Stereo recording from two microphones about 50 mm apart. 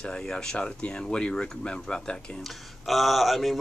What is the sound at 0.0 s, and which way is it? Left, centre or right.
Speech, centre.